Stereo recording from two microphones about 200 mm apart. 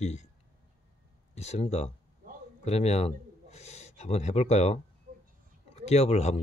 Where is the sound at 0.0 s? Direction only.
35° left (ahead or behind).